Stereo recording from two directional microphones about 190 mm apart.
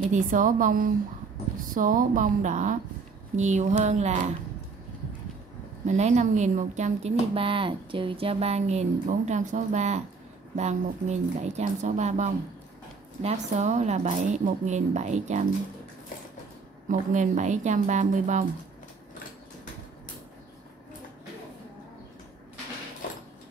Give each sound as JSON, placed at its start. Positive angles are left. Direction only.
{"t": 0.0, "sound": "a woman's voice", "side_deg": -45}
{"t": 5.9, "sound": "a woman's voice", "side_deg": -35}
{"t": 16.9, "sound": "a woman's voice", "side_deg": -40}